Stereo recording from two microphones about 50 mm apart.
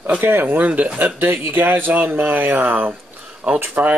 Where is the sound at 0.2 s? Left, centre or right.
Right.